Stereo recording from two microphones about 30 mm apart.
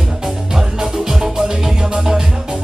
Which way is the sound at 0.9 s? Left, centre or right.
Centre.